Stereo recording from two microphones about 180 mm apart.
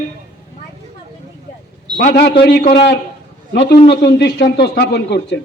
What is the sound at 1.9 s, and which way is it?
Speech, 60° left (ahead or behind).